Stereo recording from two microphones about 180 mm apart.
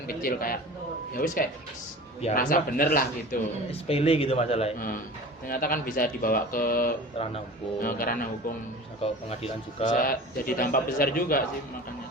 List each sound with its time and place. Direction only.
0.1 s speech: 55° left (ahead or behind)
3.7 s a man's voice: 35° left (ahead or behind)
5.5 s speech: 55° left (ahead or behind)
7.2 s a man's voice: 30° left (ahead or behind)
7.8 s speech: 50° left (ahead or behind)
9.0 s speech: 35° left (ahead or behind); by 11.4 s 55° left (ahead or behind)